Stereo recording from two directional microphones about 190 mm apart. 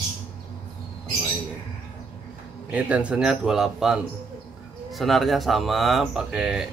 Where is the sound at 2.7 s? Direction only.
5° right (ahead or behind).